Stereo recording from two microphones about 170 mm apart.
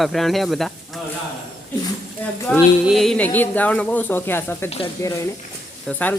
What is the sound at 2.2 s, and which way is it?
Speech, 10° left (ahead or behind).